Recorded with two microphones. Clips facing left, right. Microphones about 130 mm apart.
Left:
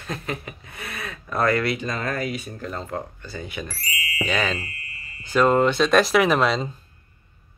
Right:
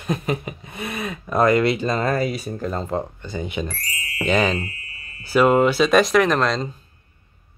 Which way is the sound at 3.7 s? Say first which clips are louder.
Right 2 dB; 5° left (ahead or behind).